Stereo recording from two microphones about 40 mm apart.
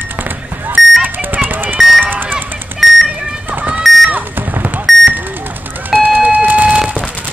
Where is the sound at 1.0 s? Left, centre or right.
Right.